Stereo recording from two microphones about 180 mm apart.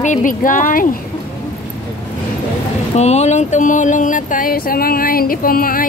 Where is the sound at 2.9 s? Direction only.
40° left (ahead or behind).